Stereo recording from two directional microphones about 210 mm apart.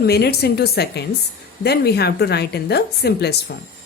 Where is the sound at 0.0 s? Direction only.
50° left (ahead or behind).